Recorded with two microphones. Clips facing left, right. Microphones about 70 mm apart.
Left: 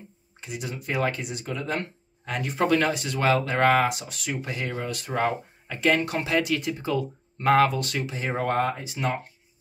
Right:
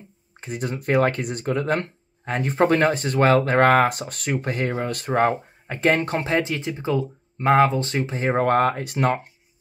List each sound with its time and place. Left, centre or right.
0.4 s speech: right